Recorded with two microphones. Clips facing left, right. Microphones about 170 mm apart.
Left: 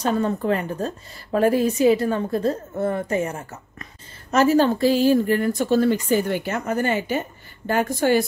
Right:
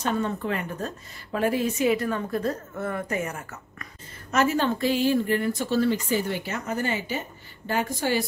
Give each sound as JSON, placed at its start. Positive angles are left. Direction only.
{"t": 0.0, "sound": "a woman's voice", "side_deg": 40}